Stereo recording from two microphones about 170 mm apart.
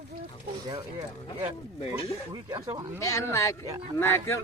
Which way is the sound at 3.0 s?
20° left (ahead or behind).